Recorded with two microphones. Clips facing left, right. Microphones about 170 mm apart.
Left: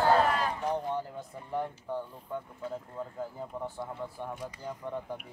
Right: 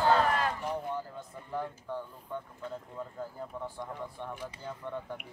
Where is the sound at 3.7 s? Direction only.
10° left (ahead or behind).